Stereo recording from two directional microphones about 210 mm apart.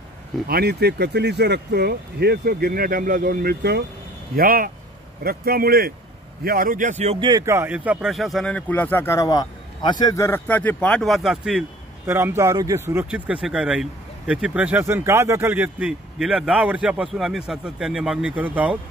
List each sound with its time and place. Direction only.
0.5 s speech: 50° right (ahead or behind); by 18.8 s 5° right (ahead or behind)